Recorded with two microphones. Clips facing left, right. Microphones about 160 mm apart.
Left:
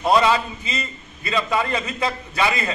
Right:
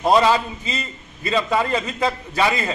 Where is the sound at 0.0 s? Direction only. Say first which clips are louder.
Right 1 dB; 30° right (ahead or behind).